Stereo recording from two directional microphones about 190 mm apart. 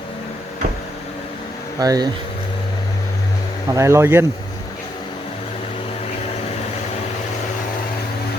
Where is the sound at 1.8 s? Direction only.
20° right (ahead or behind).